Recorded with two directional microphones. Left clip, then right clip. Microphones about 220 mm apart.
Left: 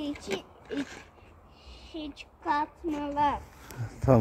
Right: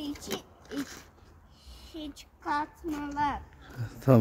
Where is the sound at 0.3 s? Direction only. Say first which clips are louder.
Left 3 dB; 10° left (ahead or behind).